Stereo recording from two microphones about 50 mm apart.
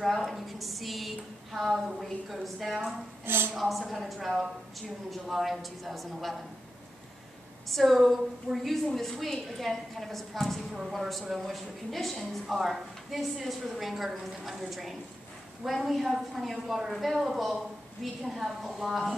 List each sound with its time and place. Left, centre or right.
0.0 s a woman's voice: centre
3.3 s a woman's voice: right
3.5 s a woman's voice: centre
7.7 s a woman's voice: centre